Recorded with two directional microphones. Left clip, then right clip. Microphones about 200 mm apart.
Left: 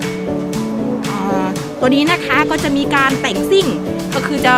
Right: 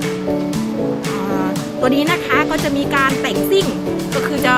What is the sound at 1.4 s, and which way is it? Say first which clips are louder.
Speech: left 1 dB; 40° left (ahead or behind).